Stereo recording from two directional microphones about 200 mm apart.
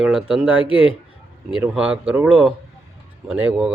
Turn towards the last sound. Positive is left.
turn(degrees=-5)  # may be behind; listen again after turning